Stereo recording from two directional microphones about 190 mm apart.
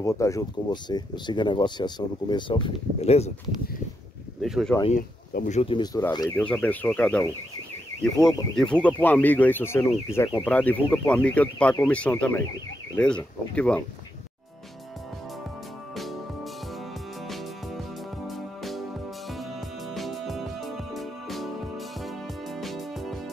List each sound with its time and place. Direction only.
0.0 s speech: 15° left (ahead or behind); by 3.3 s 35° left (ahead or behind)
4.4 s speech: centre (ahead or behind)
5.3 s speech: 40° left (ahead or behind); by 6.4 s 20° left (ahead or behind)
6.4 s speech: 10° left (ahead or behind)
15.9 s music: centre (ahead or behind)